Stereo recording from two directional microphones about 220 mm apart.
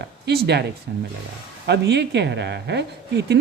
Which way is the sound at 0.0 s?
50° right (ahead or behind).